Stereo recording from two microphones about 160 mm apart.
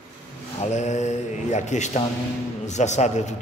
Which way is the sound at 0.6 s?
45° left (ahead or behind).